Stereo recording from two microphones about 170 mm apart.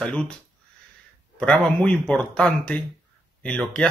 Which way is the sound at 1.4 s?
5° left (ahead or behind).